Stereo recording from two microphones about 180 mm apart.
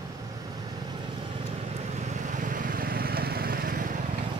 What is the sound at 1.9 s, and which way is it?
Vehicle, 40° right (ahead or behind).